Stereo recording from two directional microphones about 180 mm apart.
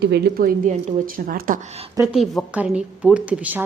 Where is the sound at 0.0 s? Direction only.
60° right (ahead or behind).